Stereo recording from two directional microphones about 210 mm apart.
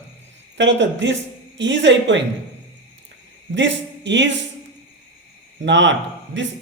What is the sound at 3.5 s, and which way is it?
Speech, 60° right (ahead or behind).